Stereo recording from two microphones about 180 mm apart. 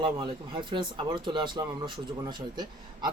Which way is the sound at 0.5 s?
25° right (ahead or behind).